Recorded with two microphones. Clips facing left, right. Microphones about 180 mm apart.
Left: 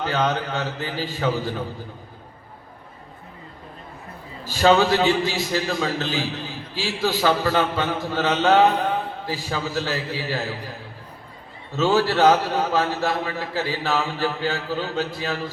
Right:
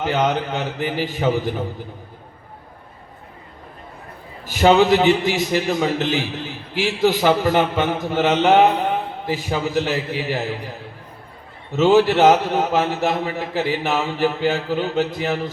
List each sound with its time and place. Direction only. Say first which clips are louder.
0.0 s a man's voice: right 3 dB; 20° right (ahead or behind)
4.4 s a man's voice: right 3 dB; 20° right (ahead or behind)